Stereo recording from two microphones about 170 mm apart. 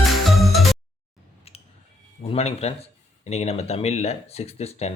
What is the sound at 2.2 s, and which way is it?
Speech, 35° left (ahead or behind).